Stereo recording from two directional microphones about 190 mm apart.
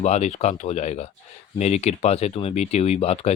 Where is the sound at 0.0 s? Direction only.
35° left (ahead or behind).